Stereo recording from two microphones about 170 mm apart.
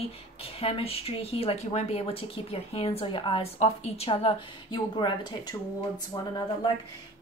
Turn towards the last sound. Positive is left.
turn(degrees=20)  # may be behind; listen again after turning